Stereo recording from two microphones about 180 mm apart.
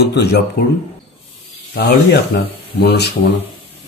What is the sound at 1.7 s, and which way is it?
A man's voice, 65° left (ahead or behind).